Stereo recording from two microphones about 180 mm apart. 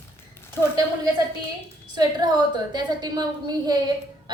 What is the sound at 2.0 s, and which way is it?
A woman's voice, 20° right (ahead or behind).